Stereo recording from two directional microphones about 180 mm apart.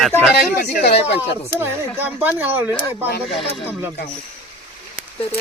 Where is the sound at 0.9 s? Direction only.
35° left (ahead or behind).